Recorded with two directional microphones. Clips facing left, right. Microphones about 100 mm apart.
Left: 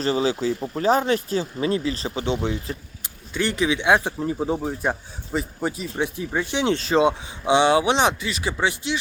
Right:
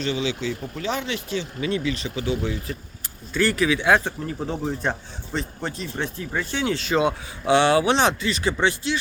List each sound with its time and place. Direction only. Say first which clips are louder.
0.0 s speech: left 4 dB; 40° left (ahead or behind); by 6.7 s 15° left (ahead or behind)
6.7 s speech: left 2 dB; 35° left (ahead or behind); by 9.0 s 15° left (ahead or behind)